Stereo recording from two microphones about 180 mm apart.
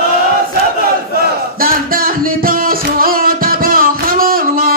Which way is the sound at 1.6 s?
55° right (ahead or behind).